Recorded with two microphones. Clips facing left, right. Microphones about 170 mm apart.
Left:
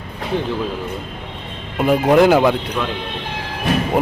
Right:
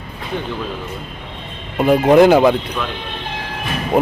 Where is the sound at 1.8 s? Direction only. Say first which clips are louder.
Right 3 dB; centre (ahead or behind).